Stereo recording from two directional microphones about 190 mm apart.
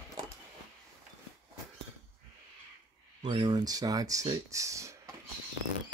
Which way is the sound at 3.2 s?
20° right (ahead or behind).